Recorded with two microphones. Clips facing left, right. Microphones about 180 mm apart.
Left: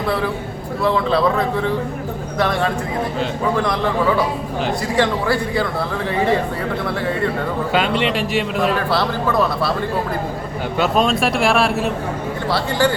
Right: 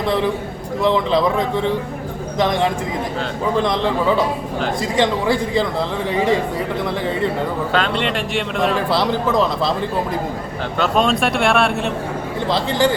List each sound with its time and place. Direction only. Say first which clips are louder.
0.8 s speech: right 1 dB; 20° right (ahead or behind)
4.9 s speech: right 1 dB; 15° right (ahead or behind)
7.7 s speech: left 4 dB; 10° left (ahead or behind)
8.9 s speech: right 1 dB; 15° right (ahead or behind)
10.8 s speech: even; centre (ahead or behind)
12.5 s speech: right 1 dB; 20° right (ahead or behind)